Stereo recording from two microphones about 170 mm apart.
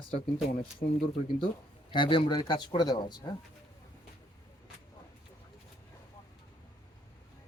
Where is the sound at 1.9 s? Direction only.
30° left (ahead or behind).